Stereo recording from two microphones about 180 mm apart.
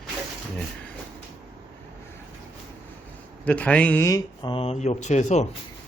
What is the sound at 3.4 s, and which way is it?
Speech, 5° left (ahead or behind).